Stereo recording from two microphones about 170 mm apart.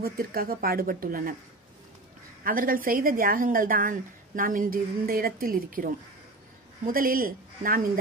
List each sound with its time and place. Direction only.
0.0 s a woman's voice: 60° right (ahead or behind)
2.4 s a woman's voice: 55° right (ahead or behind)
6.9 s a woman's voice: 55° right (ahead or behind)